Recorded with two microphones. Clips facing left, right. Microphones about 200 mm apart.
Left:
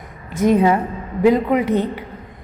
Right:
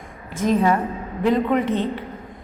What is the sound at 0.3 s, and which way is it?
Speech, 70° left (ahead or behind).